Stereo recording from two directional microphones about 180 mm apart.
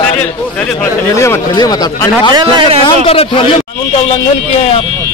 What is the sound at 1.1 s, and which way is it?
Speech, 15° left (ahead or behind).